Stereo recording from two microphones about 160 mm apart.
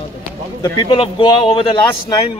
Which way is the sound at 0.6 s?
30° left (ahead or behind).